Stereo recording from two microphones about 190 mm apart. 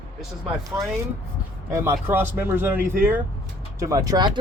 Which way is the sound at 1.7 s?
15° right (ahead or behind).